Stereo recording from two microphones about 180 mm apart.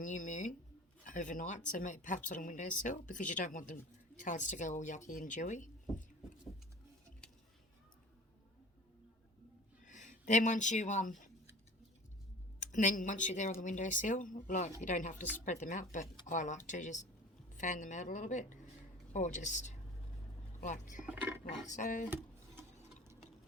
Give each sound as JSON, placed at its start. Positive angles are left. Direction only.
{"t": 0.0, "sound": "speech", "side_deg": 45}
{"t": 9.8, "sound": "speech", "side_deg": 45}
{"t": 12.5, "sound": "speech", "side_deg": 45}
{"t": 21.1, "sound": "a sound", "side_deg": -10}
{"t": 21.7, "sound": "speech", "side_deg": 45}